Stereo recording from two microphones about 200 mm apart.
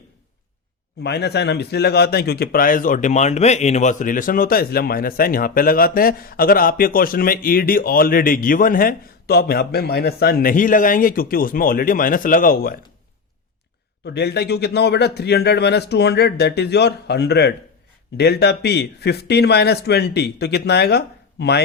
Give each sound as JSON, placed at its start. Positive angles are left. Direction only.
{"t": 1.0, "sound": "speech", "side_deg": 55}
{"t": 14.0, "sound": "a man's voice", "side_deg": 55}